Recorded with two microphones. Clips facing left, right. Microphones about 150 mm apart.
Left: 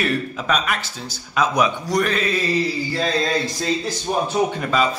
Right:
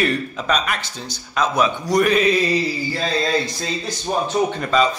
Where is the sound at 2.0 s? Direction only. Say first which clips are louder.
Right 5 dB; 15° right (ahead or behind).